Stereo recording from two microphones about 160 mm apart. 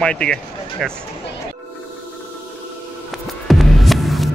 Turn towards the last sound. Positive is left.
turn(degrees=0)  # may be behind; listen again after turning